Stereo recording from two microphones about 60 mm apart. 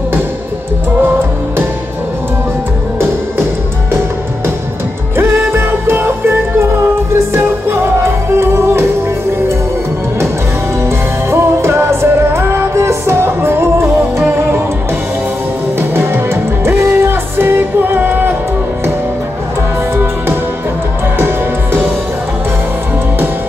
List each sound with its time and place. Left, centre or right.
5.6 s music: right
10.8 s music: right
15.9 s music: right